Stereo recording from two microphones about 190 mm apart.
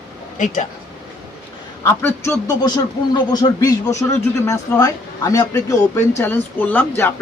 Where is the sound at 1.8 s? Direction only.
15° left (ahead or behind).